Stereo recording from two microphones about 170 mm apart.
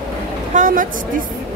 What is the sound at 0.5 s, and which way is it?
Speech, 55° right (ahead or behind).